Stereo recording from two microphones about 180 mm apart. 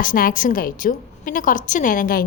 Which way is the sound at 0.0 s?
50° left (ahead or behind).